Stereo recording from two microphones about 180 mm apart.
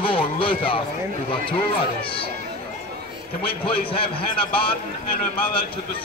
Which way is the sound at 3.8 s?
30° left (ahead or behind).